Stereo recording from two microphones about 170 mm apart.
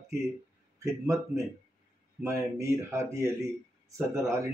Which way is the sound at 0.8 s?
20° right (ahead or behind).